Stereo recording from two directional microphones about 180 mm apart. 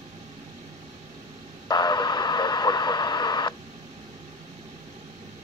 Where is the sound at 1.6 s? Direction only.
25° left (ahead or behind).